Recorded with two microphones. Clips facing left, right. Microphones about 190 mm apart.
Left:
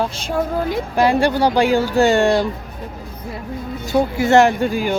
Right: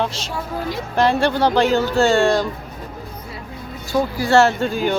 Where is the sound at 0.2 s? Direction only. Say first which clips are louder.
Left 6 dB; 50° left (ahead or behind).